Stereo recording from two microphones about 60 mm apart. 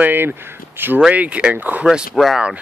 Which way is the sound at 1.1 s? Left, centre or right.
Right.